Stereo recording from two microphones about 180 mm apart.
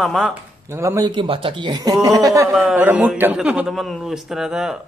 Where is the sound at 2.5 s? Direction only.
5° right (ahead or behind).